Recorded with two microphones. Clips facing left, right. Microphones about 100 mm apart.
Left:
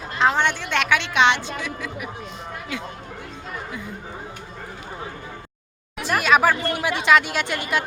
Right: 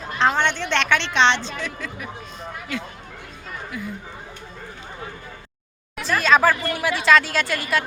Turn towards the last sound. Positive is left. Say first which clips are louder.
# right 1 dB
turn(degrees=20)  # may be behind; listen again after turning